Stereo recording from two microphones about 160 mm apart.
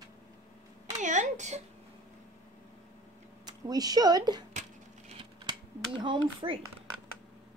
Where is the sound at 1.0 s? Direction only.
50° right (ahead or behind).